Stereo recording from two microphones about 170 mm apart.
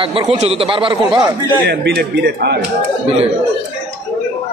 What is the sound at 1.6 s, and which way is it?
Speech, 80° right.